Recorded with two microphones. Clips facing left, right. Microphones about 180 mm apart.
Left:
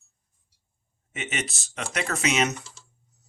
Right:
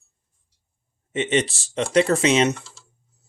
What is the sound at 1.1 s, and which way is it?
Speech, 30° right (ahead or behind).